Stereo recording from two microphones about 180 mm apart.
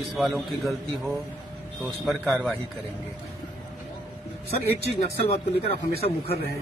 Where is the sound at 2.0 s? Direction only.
Centre (ahead or behind).